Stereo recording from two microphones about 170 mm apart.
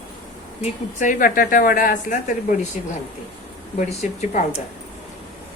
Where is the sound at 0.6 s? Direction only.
50° left (ahead or behind).